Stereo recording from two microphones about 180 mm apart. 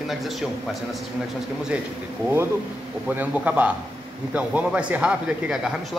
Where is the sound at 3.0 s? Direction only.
10° right (ahead or behind).